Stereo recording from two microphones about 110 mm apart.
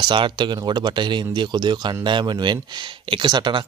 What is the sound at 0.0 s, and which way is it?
Speech, 45° right (ahead or behind).